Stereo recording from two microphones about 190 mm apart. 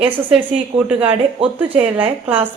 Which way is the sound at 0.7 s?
10° right (ahead or behind).